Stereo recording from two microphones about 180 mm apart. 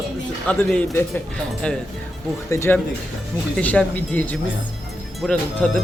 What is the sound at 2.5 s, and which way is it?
Speech, 15° left (ahead or behind).